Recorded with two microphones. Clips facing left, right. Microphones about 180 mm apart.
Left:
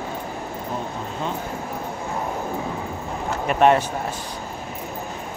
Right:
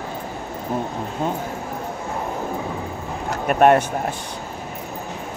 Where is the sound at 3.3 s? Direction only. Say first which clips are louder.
Right 2 dB; 50° right (ahead or behind).